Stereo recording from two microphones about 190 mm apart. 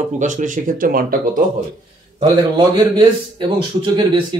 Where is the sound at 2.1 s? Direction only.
25° right (ahead or behind).